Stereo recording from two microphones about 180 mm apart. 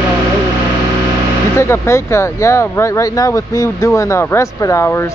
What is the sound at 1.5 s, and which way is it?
Speech, 15° left (ahead or behind).